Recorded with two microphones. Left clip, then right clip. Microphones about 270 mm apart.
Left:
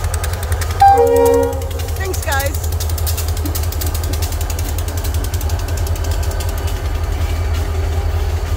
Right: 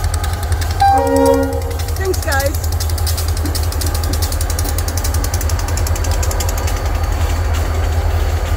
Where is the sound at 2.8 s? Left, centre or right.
Left.